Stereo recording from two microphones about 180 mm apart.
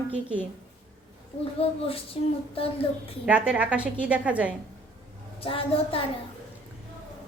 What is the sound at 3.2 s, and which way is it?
A woman's voice, 5° right (ahead or behind).